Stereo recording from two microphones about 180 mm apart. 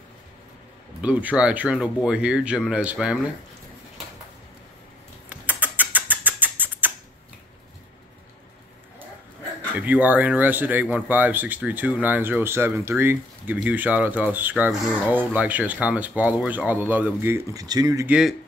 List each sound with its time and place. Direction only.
1.0 s speech: 5° right (ahead or behind)
5.3 s rodents: 10° right (ahead or behind)
9.8 s speech: 10° right (ahead or behind)